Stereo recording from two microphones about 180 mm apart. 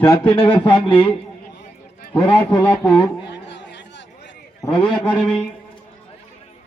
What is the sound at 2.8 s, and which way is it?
Speech, 5° left (ahead or behind).